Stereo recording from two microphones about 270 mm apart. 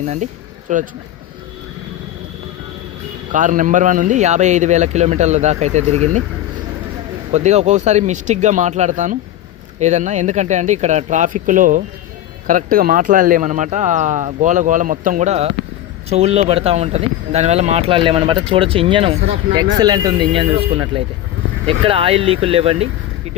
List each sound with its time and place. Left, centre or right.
0.0 s speech: right
3.3 s speech: right
7.3 s speech: right